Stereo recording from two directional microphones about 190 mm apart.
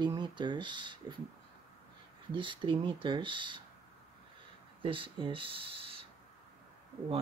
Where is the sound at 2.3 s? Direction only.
25° right (ahead or behind).